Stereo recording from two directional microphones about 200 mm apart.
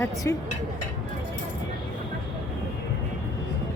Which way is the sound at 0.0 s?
15° left (ahead or behind).